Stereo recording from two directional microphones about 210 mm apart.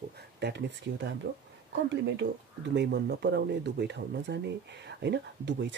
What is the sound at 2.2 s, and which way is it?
Speech, 55° right (ahead or behind).